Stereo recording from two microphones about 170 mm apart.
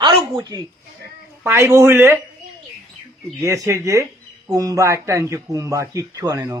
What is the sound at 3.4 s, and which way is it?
A man's voice, 15° right (ahead or behind).